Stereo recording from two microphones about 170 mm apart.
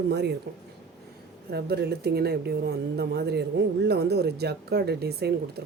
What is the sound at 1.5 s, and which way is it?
A woman's voice, 70° right (ahead or behind).